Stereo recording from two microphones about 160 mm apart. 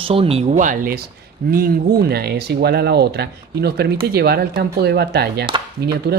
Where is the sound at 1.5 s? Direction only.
75° right (ahead or behind); by 5.5 s 90° right.